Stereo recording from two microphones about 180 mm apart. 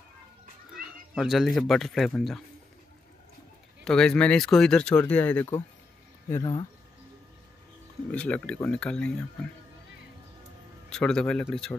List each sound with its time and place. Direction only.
1.1 s speech: centre (ahead or behind)
3.8 s speech: 5° left (ahead or behind)
6.3 s speech: 25° left (ahead or behind)
8.1 s speech: 5° left (ahead or behind)
10.9 s speech: 5° left (ahead or behind)